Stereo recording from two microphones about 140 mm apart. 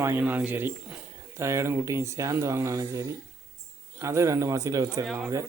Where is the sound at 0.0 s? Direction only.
15° right (ahead or behind).